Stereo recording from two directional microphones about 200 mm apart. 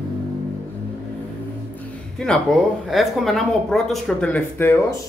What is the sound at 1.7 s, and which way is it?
A man's voice, 5° left (ahead or behind).